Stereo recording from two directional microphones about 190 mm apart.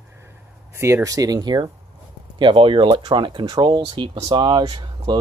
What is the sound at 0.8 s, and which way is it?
Speech, 15° right (ahead or behind).